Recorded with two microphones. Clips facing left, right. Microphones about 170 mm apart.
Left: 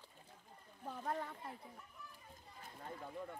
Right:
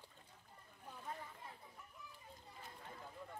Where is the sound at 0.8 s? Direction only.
70° left (ahead or behind).